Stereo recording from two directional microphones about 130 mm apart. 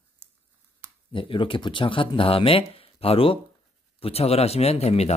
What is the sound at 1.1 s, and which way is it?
Speech, 40° left (ahead or behind).